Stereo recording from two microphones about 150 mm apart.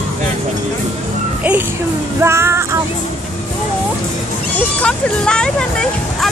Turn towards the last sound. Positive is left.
turn(degrees=5)  # may be behind; listen again after turning